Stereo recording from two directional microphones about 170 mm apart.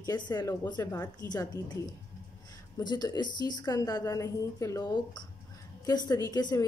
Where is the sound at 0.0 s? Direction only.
20° left (ahead or behind).